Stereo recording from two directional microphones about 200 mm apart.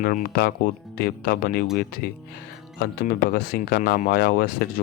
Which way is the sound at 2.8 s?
50° left (ahead or behind).